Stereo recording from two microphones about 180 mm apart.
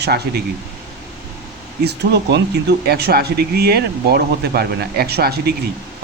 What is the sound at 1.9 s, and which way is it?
Speech, 70° right (ahead or behind).